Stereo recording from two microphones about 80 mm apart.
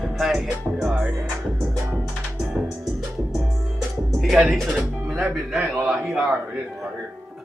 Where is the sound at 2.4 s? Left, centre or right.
Centre.